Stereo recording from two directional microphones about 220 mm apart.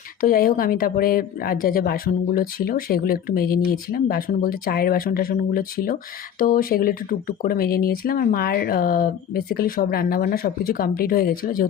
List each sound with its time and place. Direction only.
0.2 s speech: 40° left (ahead or behind)